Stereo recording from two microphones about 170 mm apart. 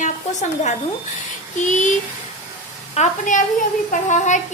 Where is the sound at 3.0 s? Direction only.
45° left (ahead or behind).